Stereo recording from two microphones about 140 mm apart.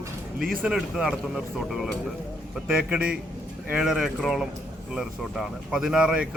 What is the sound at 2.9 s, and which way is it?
A man's voice, 5° right (ahead or behind).